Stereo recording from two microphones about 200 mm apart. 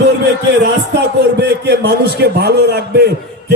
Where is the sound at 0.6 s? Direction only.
55° right (ahead or behind).